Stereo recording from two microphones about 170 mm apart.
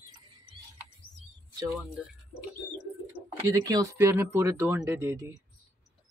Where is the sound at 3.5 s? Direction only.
20° right (ahead or behind).